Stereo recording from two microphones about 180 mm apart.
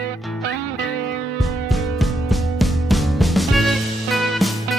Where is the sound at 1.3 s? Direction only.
Centre (ahead or behind).